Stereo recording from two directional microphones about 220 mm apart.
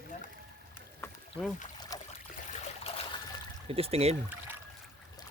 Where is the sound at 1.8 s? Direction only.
15° left (ahead or behind).